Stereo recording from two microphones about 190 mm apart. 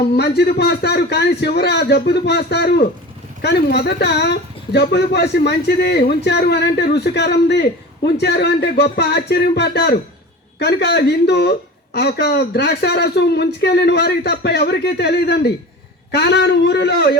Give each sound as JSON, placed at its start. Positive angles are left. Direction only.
{"t": 0.2, "sound": "speech", "side_deg": 60}